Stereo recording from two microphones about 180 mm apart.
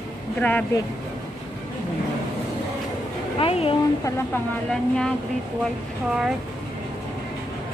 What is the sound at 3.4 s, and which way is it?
Speech, 30° left (ahead or behind).